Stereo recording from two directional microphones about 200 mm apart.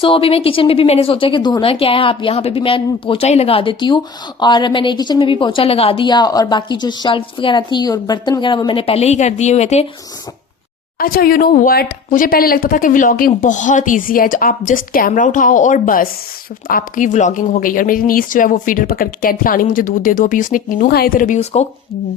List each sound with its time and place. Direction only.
0.0 s speech: 25° left (ahead or behind)
11.0 s speech: 45° left (ahead or behind)